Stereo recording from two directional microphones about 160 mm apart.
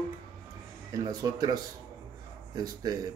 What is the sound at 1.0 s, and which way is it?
Speech, 25° right (ahead or behind).